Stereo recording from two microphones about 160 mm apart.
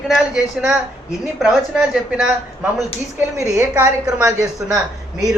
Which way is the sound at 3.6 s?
15° right (ahead or behind).